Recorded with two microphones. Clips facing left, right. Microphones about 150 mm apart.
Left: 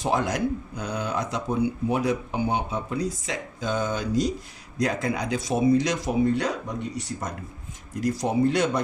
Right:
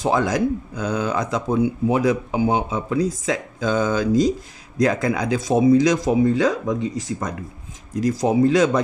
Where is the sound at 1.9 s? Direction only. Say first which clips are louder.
Right 5 dB; 90° right.